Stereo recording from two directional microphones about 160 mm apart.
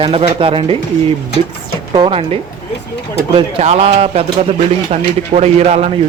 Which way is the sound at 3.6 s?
40° right (ahead or behind).